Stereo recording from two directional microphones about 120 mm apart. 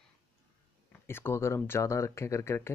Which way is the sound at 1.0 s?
20° left (ahead or behind).